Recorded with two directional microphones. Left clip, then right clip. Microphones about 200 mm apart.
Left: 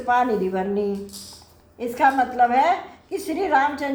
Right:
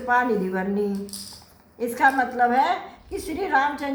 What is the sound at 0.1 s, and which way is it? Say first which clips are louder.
Speech: left 2 dB; 35° left (ahead or behind).